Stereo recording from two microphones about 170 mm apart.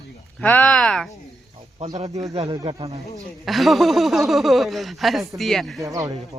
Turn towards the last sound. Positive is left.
turn(degrees=-20)  # may be behind; listen again after turning